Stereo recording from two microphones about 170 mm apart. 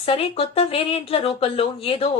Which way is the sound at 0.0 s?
35° left (ahead or behind).